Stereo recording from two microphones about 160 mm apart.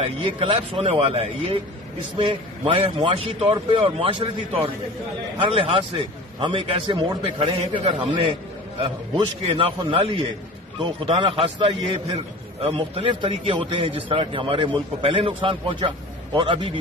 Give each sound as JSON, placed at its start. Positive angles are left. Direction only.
{"t": 0.0, "sound": "a man's voice", "side_deg": -35}
{"t": 12.6, "sound": "a man's voice", "side_deg": -30}